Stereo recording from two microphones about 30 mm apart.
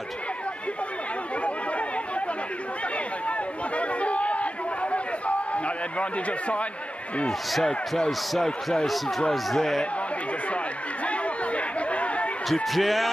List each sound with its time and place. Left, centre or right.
3.3 s a sound: left
11.1 s chatter: left
12.7 s speech: centre